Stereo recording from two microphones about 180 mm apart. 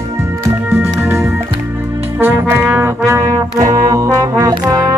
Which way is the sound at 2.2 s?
10° right (ahead or behind).